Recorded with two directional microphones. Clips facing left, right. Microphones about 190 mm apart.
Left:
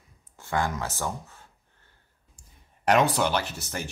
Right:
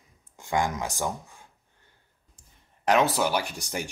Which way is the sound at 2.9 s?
Centre (ahead or behind).